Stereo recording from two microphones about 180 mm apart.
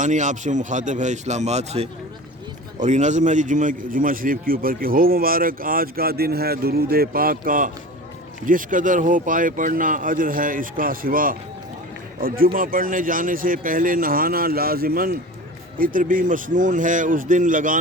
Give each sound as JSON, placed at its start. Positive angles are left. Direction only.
{"t": 0.0, "sound": "a man's voice", "side_deg": -40}